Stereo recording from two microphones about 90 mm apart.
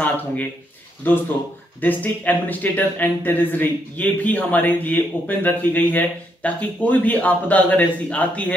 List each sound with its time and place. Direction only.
1.0 s speech: 20° left (ahead or behind)